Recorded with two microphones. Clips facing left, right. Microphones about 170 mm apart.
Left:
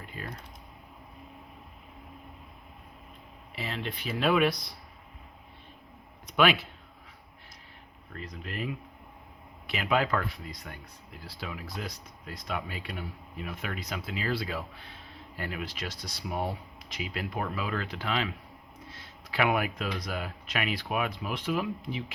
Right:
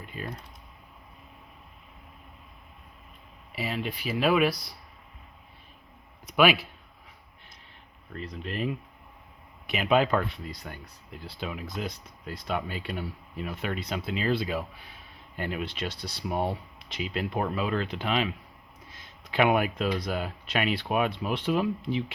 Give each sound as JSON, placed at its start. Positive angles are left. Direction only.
{"t": 3.5, "sound": "speech", "side_deg": -10}
{"t": 6.2, "sound": "speech", "side_deg": -10}
{"t": 8.1, "sound": "speech", "side_deg": -25}